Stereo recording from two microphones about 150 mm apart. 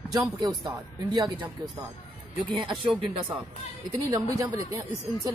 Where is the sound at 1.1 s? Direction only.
30° right (ahead or behind).